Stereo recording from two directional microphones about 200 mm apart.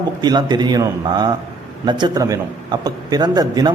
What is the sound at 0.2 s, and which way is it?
A man's voice, 20° right (ahead or behind).